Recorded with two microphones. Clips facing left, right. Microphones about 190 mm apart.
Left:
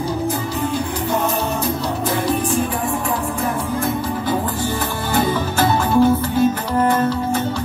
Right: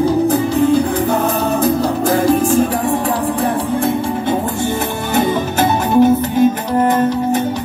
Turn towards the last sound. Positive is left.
turn(degrees=-20)  # may be behind; listen again after turning